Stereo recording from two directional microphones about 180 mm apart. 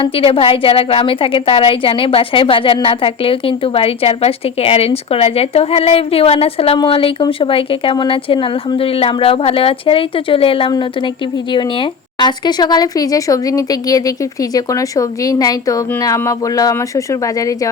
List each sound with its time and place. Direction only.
0.0 s a woman's voice: 30° left (ahead or behind)